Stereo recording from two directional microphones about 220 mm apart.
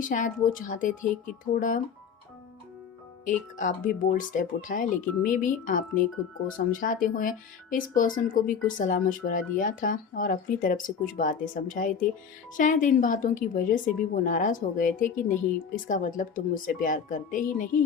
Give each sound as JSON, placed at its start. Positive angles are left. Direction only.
{"t": 0.0, "sound": "speech", "side_deg": 35}
{"t": 3.2, "sound": "speech", "side_deg": 35}